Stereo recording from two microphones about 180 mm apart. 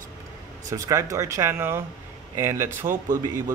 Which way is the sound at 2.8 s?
45° right (ahead or behind).